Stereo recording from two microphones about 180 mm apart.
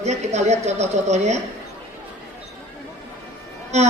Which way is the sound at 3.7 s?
40° right (ahead or behind).